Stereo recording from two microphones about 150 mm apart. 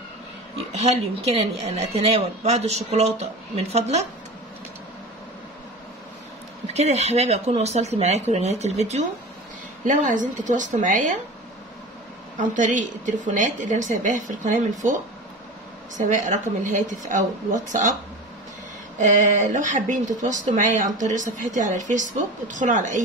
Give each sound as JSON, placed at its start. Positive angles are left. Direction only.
{"t": 0.6, "sound": "speech", "side_deg": -45}
{"t": 6.7, "sound": "speech", "side_deg": -45}
{"t": 12.4, "sound": "speech", "side_deg": -60}
{"t": 16.1, "sound": "speech", "side_deg": -55}
{"t": 18.9, "sound": "speech", "side_deg": -55}